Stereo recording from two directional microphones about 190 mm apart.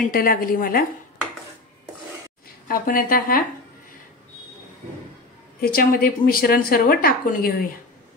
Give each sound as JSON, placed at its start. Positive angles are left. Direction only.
{"t": 0.0, "sound": "speech", "side_deg": 45}
{"t": 2.7, "sound": "speech", "side_deg": 50}
{"t": 5.6, "sound": "speech", "side_deg": 50}